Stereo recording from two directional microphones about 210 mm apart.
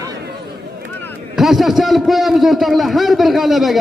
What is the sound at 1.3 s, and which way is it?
A man's voice, centre (ahead or behind).